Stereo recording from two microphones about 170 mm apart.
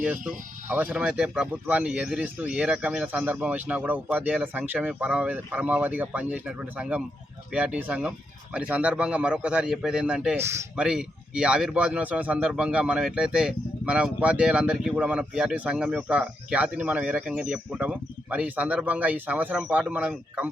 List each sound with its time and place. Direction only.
0.0 s a man's voice: 10° right (ahead or behind)